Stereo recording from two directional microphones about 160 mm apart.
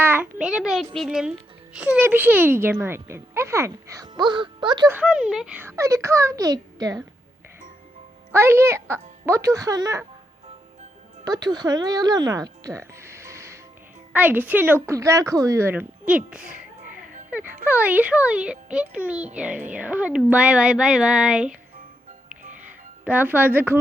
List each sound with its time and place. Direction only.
0.0 s a child's voice: 15° right (ahead or behind)
4.1 s a child's voice: 30° right (ahead or behind)
4.9 s a child's voice: 5° right (ahead or behind); by 7.0 s 25° right (ahead or behind)
8.3 s a child's voice: 15° right (ahead or behind)
11.3 s a child's voice: 25° right (ahead or behind); by 21.5 s 5° right (ahead or behind)
23.0 s a child's voice: 10° right (ahead or behind)